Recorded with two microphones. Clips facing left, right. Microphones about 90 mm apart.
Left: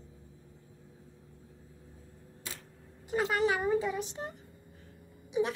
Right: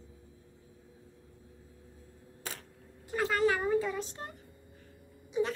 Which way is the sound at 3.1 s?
20° left (ahead or behind).